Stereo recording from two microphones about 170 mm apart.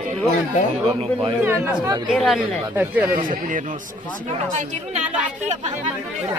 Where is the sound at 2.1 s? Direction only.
Centre (ahead or behind).